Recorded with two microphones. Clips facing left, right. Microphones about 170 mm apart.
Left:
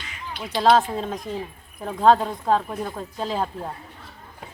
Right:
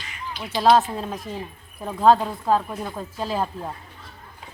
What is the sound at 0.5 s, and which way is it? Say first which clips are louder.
Speech: even; 5° right (ahead or behind).